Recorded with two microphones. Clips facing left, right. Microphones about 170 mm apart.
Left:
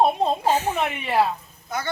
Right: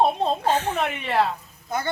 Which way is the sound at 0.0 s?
5° left (ahead or behind).